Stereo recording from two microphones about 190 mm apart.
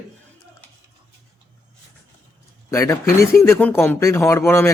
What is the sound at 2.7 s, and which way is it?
Speech, 15° left (ahead or behind).